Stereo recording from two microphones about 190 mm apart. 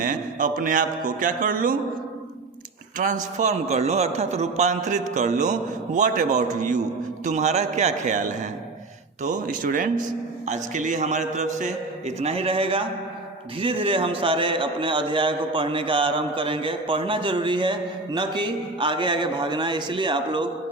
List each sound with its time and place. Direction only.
0.0 s a man's voice: 45° right (ahead or behind)
3.0 s a man's voice: 40° right (ahead or behind); by 20.5 s 25° right (ahead or behind)